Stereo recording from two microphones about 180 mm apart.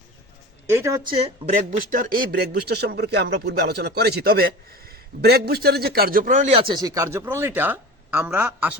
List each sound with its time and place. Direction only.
0.7 s a man's voice: 15° right (ahead or behind)
1.4 s speech: 30° right (ahead or behind)
1.9 s a man's voice: 50° right (ahead or behind)
6.5 s a man's voice: 30° right (ahead or behind); by 8.8 s 10° right (ahead or behind)